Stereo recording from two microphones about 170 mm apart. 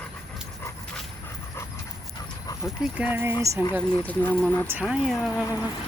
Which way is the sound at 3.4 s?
20° right (ahead or behind).